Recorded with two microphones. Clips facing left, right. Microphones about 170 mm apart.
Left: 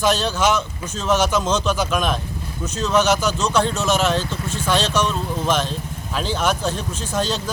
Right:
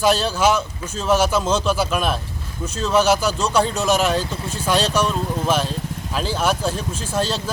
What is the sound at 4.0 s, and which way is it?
A man's voice, 10° right (ahead or behind).